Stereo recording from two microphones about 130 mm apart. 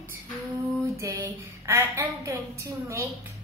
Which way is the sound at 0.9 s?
20° right (ahead or behind).